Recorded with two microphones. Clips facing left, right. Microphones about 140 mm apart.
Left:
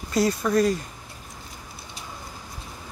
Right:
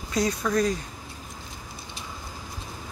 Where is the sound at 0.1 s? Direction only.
5° left (ahead or behind).